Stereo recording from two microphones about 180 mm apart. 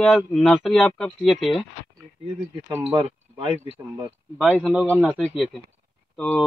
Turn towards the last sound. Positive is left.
turn(degrees=5)  # may be behind; listen again after turning